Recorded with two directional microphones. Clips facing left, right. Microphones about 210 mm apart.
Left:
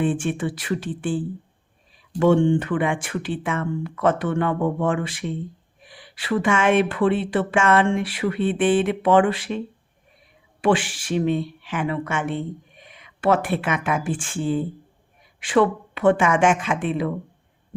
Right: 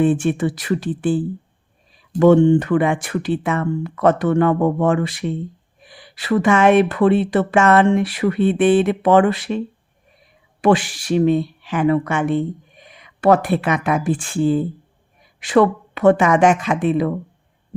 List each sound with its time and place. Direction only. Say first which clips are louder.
0.0 s speech: right 6 dB; 40° right (ahead or behind)
10.6 s speech: right 4 dB; 40° right (ahead or behind)